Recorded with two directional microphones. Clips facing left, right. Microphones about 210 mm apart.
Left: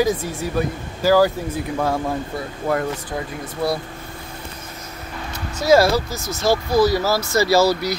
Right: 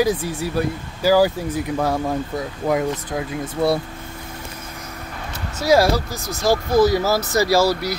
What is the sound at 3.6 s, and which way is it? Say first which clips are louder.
Speech: right 3 dB; 25° right (ahead or behind).